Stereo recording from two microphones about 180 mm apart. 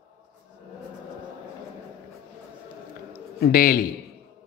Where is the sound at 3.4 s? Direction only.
50° left (ahead or behind).